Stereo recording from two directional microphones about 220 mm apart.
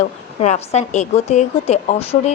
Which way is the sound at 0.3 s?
30° left (ahead or behind).